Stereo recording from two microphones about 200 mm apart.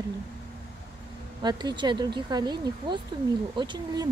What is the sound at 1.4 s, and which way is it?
Speech, 20° right (ahead or behind).